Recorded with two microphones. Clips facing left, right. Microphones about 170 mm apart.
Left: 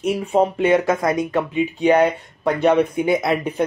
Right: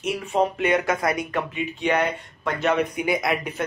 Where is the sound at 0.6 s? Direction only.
25° left (ahead or behind).